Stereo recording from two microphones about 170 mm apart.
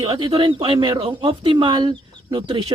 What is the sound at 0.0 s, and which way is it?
Speech, 25° right (ahead or behind).